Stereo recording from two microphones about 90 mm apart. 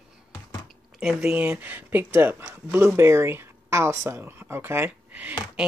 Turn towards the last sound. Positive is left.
turn(degrees=-20)  # may be behind; listen again after turning